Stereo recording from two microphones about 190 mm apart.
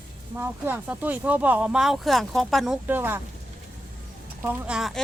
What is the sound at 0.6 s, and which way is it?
Speech, 10° right (ahead or behind).